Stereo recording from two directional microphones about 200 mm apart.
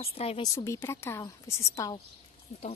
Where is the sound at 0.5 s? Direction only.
15° left (ahead or behind).